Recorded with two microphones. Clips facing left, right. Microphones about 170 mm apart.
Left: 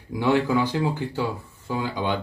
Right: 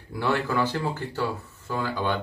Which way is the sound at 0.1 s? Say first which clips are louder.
Left 5 dB; 15° left (ahead or behind).